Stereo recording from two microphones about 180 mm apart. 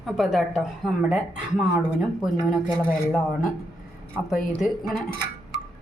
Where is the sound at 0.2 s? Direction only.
Centre (ahead or behind).